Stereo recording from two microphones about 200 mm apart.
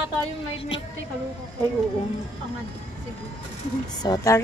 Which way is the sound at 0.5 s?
25° left (ahead or behind).